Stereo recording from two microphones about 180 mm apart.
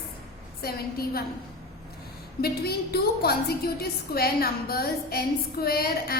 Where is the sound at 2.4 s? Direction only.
60° left (ahead or behind).